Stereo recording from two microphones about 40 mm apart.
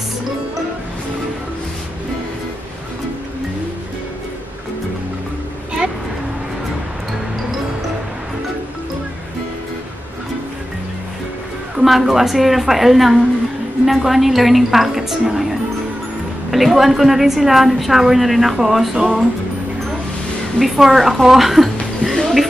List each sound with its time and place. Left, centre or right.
11.7 s a woman's voice: centre
16.4 s a woman's voice: centre
20.5 s a woman's voice: centre